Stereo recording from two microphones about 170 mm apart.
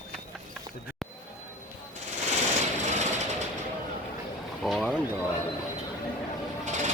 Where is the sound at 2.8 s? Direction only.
45° right (ahead or behind).